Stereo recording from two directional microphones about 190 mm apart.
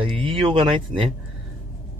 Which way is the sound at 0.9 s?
45° right (ahead or behind).